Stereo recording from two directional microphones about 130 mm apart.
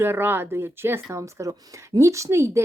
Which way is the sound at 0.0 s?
15° right (ahead or behind).